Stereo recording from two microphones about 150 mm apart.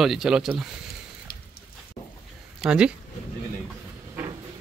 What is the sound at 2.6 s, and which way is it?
Speech, 5° right (ahead or behind).